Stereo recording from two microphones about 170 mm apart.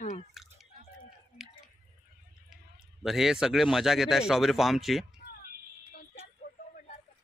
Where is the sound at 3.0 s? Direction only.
Centre (ahead or behind).